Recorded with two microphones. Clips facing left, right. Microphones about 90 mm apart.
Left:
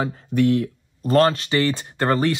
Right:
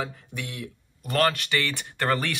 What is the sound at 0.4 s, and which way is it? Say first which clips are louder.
Speech: left 18 dB; 50° left (ahead or behind).